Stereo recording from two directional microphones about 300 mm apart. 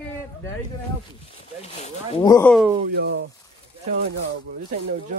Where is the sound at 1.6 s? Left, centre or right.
Centre.